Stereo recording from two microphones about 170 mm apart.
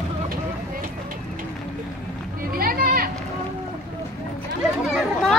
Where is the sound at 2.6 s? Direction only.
60° right (ahead or behind).